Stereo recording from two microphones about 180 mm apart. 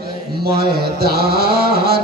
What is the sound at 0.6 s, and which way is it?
Mantra, 60° right (ahead or behind).